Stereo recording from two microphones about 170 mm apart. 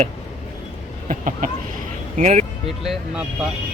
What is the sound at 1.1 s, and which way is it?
A man's voice, 50° right (ahead or behind).